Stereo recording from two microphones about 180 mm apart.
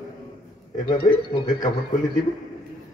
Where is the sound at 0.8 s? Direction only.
20° left (ahead or behind).